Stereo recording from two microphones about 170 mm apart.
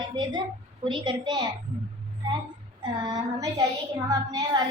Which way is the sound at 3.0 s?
20° right (ahead or behind).